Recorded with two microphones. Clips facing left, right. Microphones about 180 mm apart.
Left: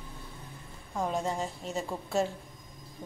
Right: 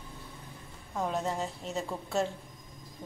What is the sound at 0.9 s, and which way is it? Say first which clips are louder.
A woman's voice: left 1 dB; centre (ahead or behind).